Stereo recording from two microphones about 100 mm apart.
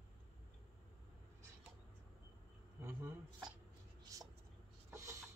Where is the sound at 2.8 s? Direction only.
20° right (ahead or behind).